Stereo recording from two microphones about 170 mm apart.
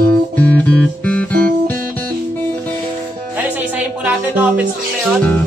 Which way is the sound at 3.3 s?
10° right (ahead or behind).